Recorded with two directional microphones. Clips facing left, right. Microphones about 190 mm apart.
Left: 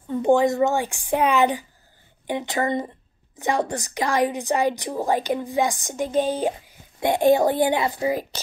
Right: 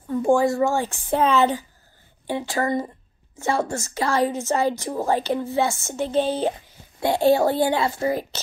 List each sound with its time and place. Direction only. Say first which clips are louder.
0.1 s a woman's voice: left 1 dB; 20° left (ahead or behind)